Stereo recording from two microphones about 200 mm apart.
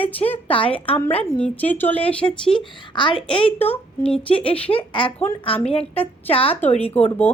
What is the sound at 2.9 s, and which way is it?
A woman's voice, 25° left (ahead or behind).